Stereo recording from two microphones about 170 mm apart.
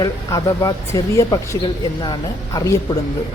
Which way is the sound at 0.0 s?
20° left (ahead or behind).